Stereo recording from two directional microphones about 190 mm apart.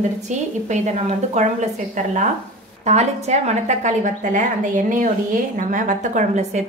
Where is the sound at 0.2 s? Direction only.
40° right (ahead or behind).